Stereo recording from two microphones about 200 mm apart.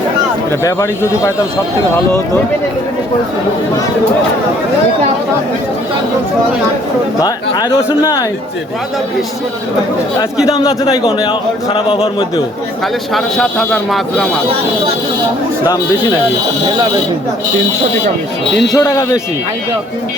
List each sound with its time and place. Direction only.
0.6 s speech: 15° left (ahead or behind)
7.2 s speech: 20° left (ahead or behind)
10.4 s speech: 15° left (ahead or behind)
13.1 s speech: centre (ahead or behind)
15.6 s speech: 20° left (ahead or behind)
18.7 s speech: 15° left (ahead or behind)